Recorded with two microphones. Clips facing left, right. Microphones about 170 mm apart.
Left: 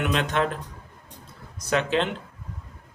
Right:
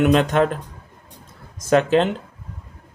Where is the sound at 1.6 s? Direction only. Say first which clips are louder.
Right 8 dB; 45° right (ahead or behind).